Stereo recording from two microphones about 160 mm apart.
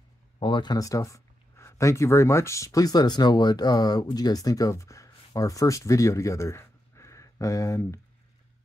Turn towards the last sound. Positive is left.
turn(degrees=20)  # may be behind; listen again after turning